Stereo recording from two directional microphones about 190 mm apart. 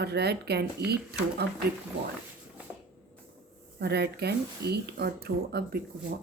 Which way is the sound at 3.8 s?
60° right (ahead or behind).